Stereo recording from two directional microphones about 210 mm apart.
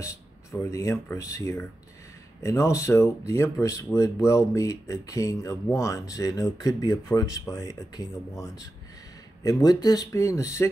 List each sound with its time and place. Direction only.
0.0 s speech: 15° left (ahead or behind)